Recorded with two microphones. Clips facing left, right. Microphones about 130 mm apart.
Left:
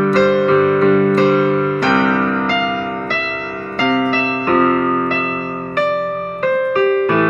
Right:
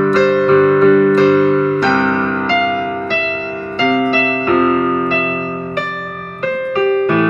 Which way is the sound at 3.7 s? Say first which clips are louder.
Right 2 dB; 45° left (ahead or behind).